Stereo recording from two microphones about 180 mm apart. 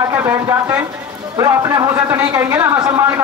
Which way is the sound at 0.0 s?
15° right (ahead or behind).